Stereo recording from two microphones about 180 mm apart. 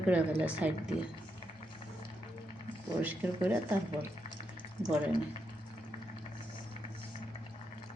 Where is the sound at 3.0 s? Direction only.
10° right (ahead or behind).